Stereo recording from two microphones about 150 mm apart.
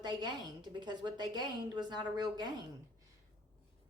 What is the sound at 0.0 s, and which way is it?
A woman's voice, 30° right (ahead or behind).